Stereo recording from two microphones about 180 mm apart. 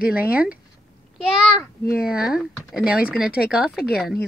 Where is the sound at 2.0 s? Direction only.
5° right (ahead or behind).